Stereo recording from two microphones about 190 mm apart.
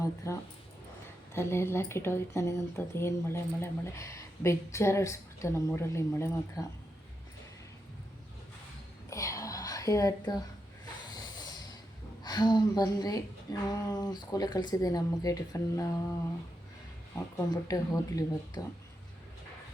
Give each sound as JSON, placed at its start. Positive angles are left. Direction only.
{"t": 0.2, "sound": "speech", "side_deg": 15}
{"t": 9.0, "sound": "whispering", "side_deg": 15}
{"t": 12.2, "sound": "speech", "side_deg": 20}
{"t": 17.2, "sound": "speech", "side_deg": 15}